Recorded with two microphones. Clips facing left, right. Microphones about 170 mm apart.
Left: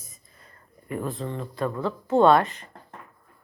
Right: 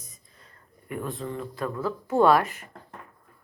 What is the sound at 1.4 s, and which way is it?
Speech, centre (ahead or behind).